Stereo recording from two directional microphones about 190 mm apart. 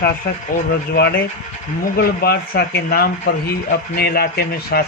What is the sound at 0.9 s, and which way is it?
A man's voice, 60° left (ahead or behind).